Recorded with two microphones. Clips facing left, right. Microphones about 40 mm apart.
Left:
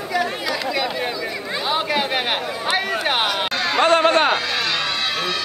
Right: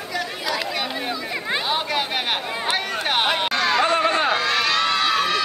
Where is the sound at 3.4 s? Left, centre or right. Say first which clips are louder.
Right 1 dB; centre.